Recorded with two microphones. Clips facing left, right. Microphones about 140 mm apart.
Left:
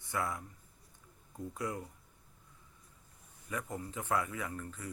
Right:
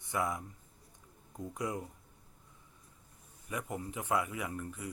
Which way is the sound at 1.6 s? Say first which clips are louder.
Right 2 dB; 20° right (ahead or behind).